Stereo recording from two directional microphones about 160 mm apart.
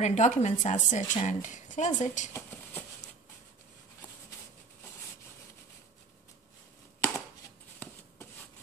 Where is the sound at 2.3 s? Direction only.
15° left (ahead or behind).